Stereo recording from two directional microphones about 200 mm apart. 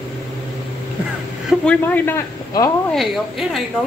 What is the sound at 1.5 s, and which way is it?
Speech, 5° left (ahead or behind).